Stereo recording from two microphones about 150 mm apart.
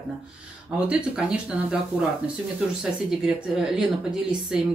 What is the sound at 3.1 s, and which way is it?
Speech, centre (ahead or behind).